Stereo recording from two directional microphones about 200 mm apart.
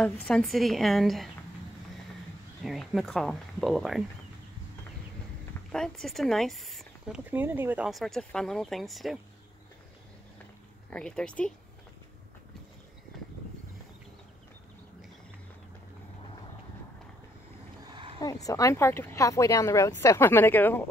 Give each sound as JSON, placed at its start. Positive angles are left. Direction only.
{"t": 0.0, "sound": "speech", "side_deg": 0}
{"t": 2.6, "sound": "speech", "side_deg": 0}
{"t": 5.7, "sound": "speech", "side_deg": 5}
{"t": 10.9, "sound": "speech", "side_deg": 5}
{"t": 17.9, "sound": "a sound", "side_deg": -25}
{"t": 18.2, "sound": "speech", "side_deg": 15}